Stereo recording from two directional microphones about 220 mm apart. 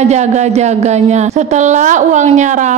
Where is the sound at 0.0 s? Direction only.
30° right (ahead or behind).